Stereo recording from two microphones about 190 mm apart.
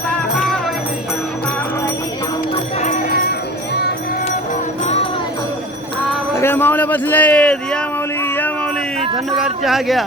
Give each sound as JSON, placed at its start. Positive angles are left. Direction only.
{"t": 0.1, "sound": "music", "side_deg": 0}
{"t": 2.8, "sound": "jingle bell", "side_deg": 45}
{"t": 6.3, "sound": "a sound", "side_deg": 10}
{"t": 9.1, "sound": "speech", "side_deg": 0}